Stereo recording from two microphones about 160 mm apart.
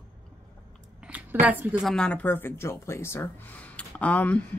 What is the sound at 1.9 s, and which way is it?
Speech, 5° left (ahead or behind).